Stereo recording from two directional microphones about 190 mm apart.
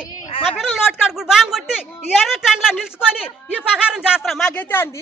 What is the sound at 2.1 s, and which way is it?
Speech, centre (ahead or behind).